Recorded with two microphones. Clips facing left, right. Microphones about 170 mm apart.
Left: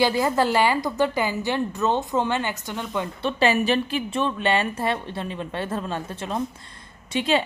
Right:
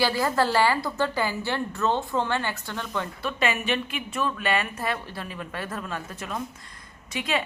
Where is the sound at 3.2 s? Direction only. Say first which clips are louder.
Left 7 dB; 35° left (ahead or behind).